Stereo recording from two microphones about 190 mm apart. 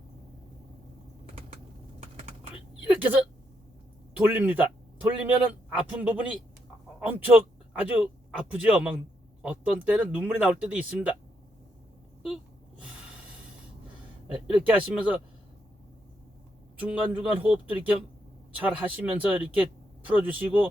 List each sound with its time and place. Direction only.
2.8 s speech: 10° right (ahead or behind)
4.2 s speech: 10° right (ahead or behind)
14.3 s speech: 5° right (ahead or behind)
16.8 s speech: 5° right (ahead or behind)